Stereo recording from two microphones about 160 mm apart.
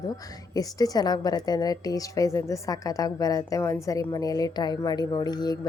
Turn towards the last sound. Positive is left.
turn(degrees=25)  # may be behind; listen again after turning